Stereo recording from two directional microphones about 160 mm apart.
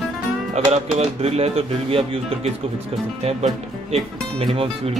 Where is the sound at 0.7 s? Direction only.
45° right (ahead or behind).